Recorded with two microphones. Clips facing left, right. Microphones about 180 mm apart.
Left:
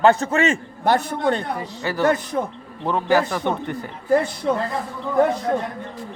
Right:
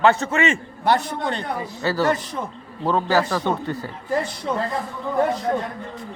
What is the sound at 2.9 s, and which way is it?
Speech, 15° left (ahead or behind).